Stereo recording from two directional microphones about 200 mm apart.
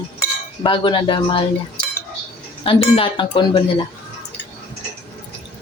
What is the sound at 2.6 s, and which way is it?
Speech, 30° left (ahead or behind).